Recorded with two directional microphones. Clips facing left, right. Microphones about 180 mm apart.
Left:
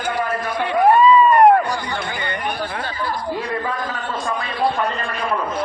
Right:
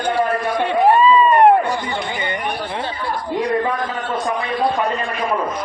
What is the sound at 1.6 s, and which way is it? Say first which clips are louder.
Chatter: right 2 dB; 20° right (ahead or behind).